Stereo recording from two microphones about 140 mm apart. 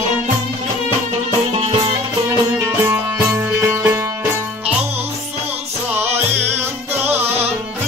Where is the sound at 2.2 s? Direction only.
20° right (ahead or behind).